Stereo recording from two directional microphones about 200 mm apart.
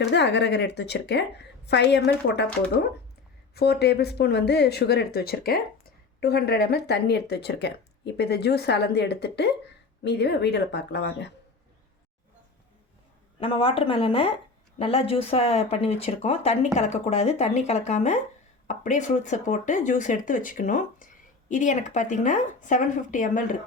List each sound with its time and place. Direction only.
0.0 s speech: 60° left (ahead or behind)
3.5 s speech: 55° left (ahead or behind)
13.4 s speech: 30° left (ahead or behind)